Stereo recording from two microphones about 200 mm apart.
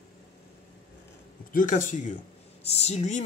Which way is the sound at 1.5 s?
40° left (ahead or behind).